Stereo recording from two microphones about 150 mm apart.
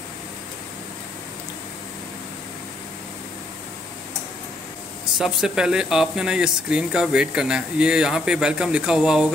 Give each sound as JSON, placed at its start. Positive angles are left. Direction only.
{"t": 5.1, "sound": "speech", "side_deg": -5}